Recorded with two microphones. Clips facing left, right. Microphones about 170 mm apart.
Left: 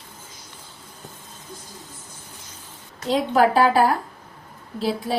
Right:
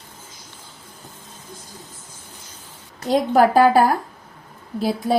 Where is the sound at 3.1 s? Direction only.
45° right (ahead or behind).